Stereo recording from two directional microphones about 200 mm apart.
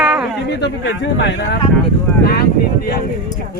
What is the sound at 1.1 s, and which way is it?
Speech, 60° left (ahead or behind).